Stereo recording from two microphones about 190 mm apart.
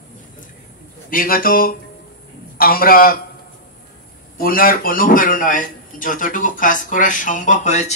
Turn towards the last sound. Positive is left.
turn(degrees=40)  # may be behind; listen again after turning